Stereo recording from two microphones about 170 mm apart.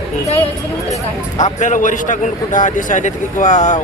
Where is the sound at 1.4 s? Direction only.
45° left (ahead or behind).